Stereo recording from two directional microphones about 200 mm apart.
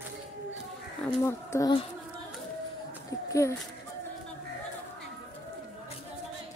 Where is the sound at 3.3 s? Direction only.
15° left (ahead or behind).